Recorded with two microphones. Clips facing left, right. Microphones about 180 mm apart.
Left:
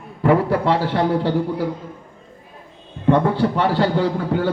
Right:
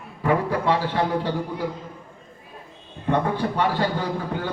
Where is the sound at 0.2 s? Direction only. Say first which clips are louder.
Left 6 dB; 65° left (ahead or behind).